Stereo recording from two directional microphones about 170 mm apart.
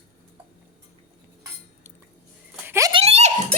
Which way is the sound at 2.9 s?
35° right (ahead or behind).